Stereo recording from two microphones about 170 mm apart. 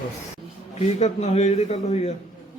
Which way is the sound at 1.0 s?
40° left (ahead or behind).